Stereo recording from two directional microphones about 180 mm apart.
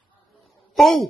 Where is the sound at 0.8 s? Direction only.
Centre (ahead or behind).